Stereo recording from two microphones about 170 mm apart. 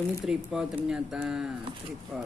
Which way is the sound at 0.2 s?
5° right (ahead or behind).